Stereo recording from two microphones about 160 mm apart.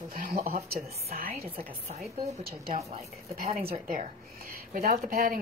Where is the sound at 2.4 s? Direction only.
70° right (ahead or behind).